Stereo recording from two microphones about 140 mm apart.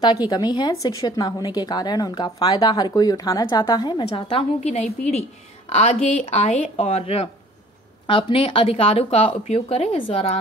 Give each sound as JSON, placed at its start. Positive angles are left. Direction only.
{"t": 0.0, "sound": "a woman's voice", "side_deg": 30}